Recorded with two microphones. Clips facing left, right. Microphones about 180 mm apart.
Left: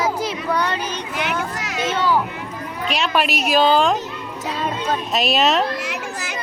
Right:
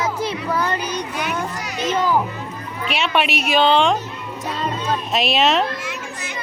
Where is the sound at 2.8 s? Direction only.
Centre (ahead or behind).